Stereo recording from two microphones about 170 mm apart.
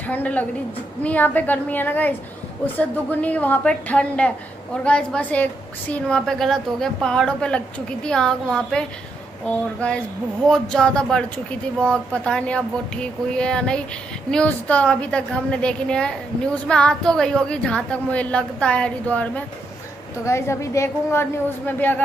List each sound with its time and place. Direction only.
0.1 s a woman's voice: 10° left (ahead or behind)
10.5 s a woman's voice: 5° left (ahead or behind)